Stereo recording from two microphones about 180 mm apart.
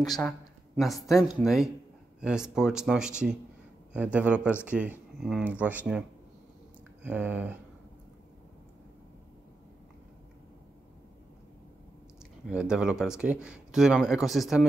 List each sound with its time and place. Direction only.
0.7 s speech: centre (ahead or behind)
12.4 s speech: 5° right (ahead or behind)